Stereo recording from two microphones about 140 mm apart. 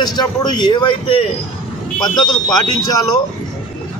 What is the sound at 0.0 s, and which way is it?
A man's voice, 30° left (ahead or behind).